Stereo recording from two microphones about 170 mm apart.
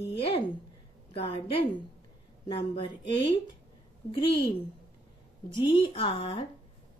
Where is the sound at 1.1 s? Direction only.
35° left (ahead or behind).